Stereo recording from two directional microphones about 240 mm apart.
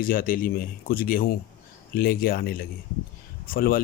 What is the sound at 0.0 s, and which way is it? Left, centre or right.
Speech, left.